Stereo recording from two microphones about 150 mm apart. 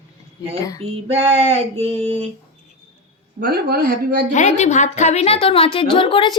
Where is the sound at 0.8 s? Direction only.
40° right (ahead or behind).